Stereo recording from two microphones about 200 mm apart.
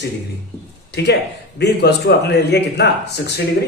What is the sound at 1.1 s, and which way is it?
A man's voice, 55° left (ahead or behind).